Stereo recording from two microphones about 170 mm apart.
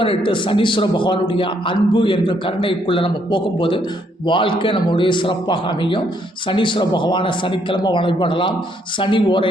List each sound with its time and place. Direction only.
0.0 s a man's voice: 30° left (ahead or behind)